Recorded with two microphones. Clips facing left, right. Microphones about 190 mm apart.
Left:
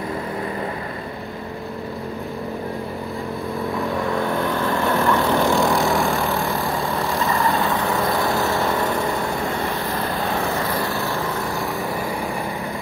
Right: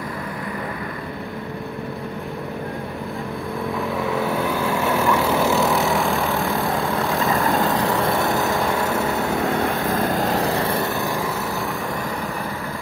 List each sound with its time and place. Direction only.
4.0 s vehicle: 5° right (ahead or behind)
8.0 s vehicle: 25° right (ahead or behind)
9.6 s vehicle: 50° right (ahead or behind); by 11.1 s 25° right (ahead or behind)